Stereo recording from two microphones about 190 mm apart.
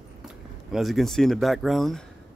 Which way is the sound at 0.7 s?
Centre (ahead or behind).